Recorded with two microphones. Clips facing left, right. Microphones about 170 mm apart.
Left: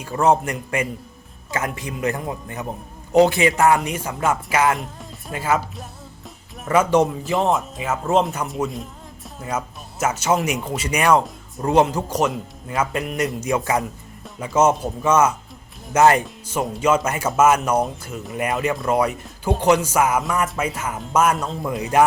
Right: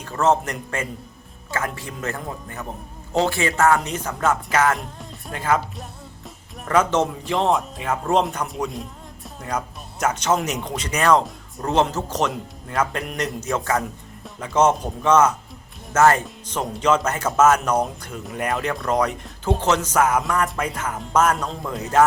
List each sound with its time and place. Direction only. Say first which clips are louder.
0.0 s speech: left 2 dB; 10° left (ahead or behind)
11.7 s speech: left 3 dB; 10° left (ahead or behind)
16.2 s speech: left 2 dB; 5° left (ahead or behind)